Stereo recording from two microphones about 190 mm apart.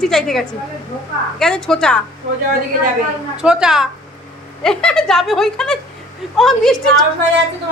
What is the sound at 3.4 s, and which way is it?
A woman's voice, 5° right (ahead or behind).